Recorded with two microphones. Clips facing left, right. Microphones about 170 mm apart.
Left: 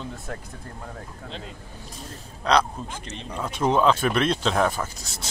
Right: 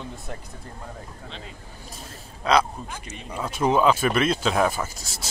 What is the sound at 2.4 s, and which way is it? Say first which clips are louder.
Speech: even; 10° right (ahead or behind).